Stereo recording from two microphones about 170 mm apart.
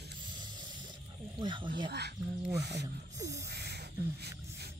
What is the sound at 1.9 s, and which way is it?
Speech, 75° right (ahead or behind).